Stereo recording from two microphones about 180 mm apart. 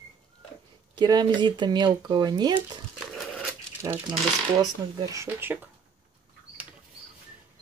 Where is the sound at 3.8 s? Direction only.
15° right (ahead or behind).